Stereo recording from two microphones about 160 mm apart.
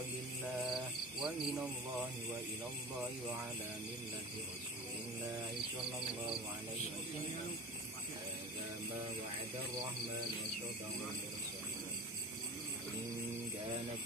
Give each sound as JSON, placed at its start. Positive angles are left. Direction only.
{"t": 1.2, "sound": "speech", "side_deg": 0}
{"t": 5.8, "sound": "speech", "side_deg": 0}